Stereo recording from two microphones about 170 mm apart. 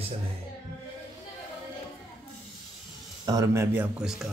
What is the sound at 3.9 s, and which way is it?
Speech, 5° right (ahead or behind).